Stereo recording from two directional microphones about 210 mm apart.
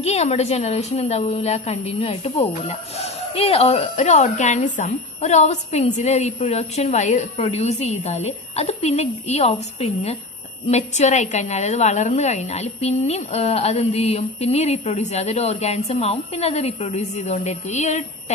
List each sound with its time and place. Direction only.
0.0 s a woman's voice: 30° left (ahead or behind)